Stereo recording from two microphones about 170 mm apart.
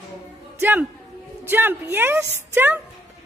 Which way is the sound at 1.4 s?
10° right (ahead or behind).